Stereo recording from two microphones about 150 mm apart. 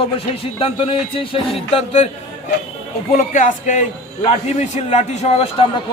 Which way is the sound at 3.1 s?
55° left (ahead or behind).